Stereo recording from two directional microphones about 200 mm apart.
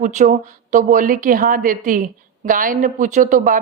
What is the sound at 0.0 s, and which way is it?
A woman's voice, 40° right (ahead or behind).